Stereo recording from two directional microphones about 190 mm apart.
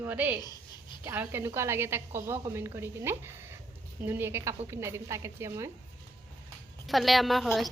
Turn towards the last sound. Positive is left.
turn(degrees=0)  # may be behind; listen again after turning